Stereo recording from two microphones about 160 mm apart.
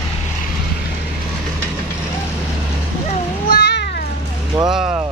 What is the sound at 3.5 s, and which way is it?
Cat, 80° left.